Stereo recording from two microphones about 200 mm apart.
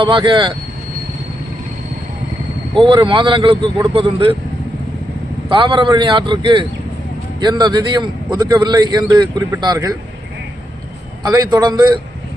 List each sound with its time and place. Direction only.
0.0 s a man's voice: 25° right (ahead or behind)
2.8 s a man's voice: 25° right (ahead or behind)
5.5 s a man's voice: 25° right (ahead or behind)
11.2 s a man's voice: 20° right (ahead or behind)